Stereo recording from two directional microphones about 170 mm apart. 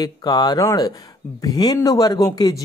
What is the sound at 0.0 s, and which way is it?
Speech, 25° left (ahead or behind).